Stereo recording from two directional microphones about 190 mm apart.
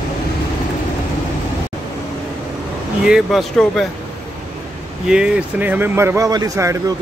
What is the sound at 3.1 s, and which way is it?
Speech, centre (ahead or behind).